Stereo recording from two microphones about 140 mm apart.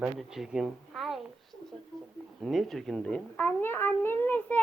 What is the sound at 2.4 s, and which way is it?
A child's voice, centre (ahead or behind).